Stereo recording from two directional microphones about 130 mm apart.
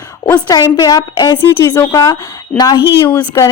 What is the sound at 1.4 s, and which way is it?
A woman's voice, 15° left (ahead or behind).